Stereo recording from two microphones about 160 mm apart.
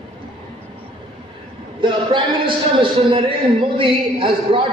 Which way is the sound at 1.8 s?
30° right (ahead or behind).